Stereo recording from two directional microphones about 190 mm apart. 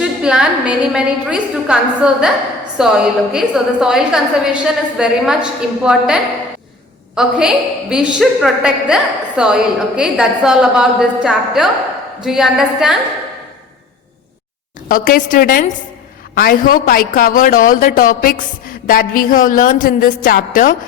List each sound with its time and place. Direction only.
0.0 s a woman's voice: 5° right (ahead or behind)
7.2 s a woman's voice: 5° right (ahead or behind)
14.8 s a man's voice: 50° left (ahead or behind)